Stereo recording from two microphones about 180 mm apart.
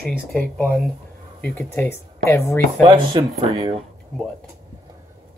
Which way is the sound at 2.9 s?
25° right (ahead or behind).